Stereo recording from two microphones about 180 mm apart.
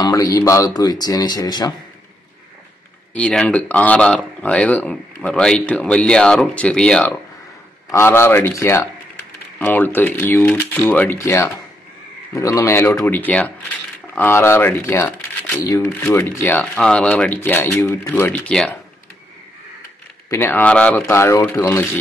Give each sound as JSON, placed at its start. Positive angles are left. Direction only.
{"t": 0.0, "sound": "speech", "side_deg": 20}
{"t": 3.2, "sound": "speech", "side_deg": 5}
{"t": 20.2, "sound": "speech", "side_deg": 15}